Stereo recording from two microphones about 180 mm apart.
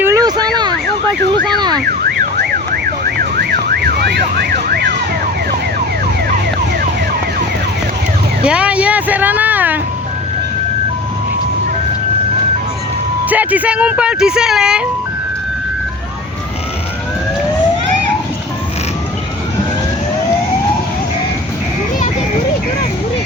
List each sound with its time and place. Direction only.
0.0 s a sound: 20° right (ahead or behind)
1.5 s car alarm: 25° right (ahead or behind)
2.4 s emergency vehicle: 60° right (ahead or behind)
8.4 s speech: 5° right (ahead or behind)
13.3 s speech: 10° right (ahead or behind)